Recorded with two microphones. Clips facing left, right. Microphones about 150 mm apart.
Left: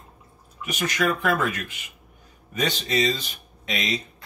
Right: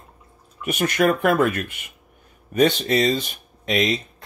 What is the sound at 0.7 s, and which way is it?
Speech, 55° right (ahead or behind).